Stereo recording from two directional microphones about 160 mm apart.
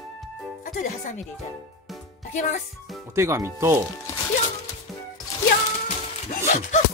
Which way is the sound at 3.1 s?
15° right (ahead or behind).